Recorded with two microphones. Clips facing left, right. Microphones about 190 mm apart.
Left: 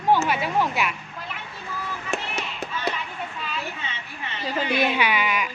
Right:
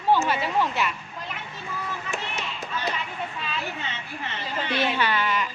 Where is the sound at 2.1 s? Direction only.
65° left (ahead or behind).